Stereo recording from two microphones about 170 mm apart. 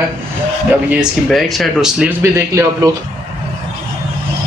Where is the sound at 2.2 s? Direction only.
15° right (ahead or behind).